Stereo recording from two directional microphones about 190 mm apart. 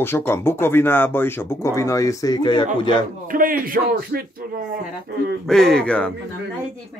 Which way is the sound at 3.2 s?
45° right (ahead or behind).